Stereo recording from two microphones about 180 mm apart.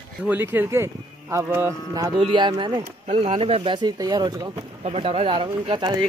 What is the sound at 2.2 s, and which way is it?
Speech, 25° right (ahead or behind).